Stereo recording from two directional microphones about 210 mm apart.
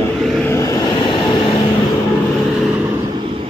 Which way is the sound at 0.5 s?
15° left (ahead or behind).